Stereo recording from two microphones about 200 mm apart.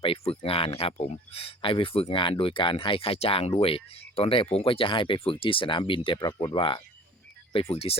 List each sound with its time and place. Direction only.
0.0 s speech: 30° left (ahead or behind)